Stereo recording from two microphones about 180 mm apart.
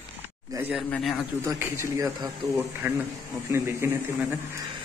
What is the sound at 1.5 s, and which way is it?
A man's voice, 15° right (ahead or behind).